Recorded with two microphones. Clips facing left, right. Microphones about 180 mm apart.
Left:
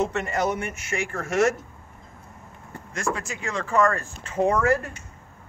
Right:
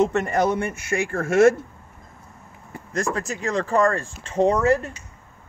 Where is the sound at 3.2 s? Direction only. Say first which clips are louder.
Right 6 dB; 40° right (ahead or behind); by 4.9 s 20° right (ahead or behind).